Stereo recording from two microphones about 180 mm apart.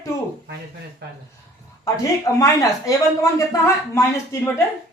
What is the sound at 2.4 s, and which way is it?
A man's voice, 20° left (ahead or behind).